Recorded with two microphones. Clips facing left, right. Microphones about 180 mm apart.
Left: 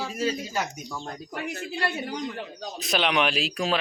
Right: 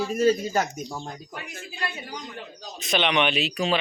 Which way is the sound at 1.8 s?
65° left (ahead or behind).